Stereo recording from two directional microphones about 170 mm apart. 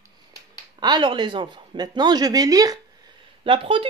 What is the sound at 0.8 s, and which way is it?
Speech, 25° right (ahead or behind).